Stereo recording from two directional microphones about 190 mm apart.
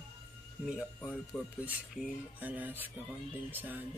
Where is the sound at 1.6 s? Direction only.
10° right (ahead or behind).